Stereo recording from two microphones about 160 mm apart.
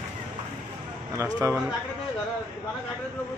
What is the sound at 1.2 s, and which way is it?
Speech, 20° right (ahead or behind).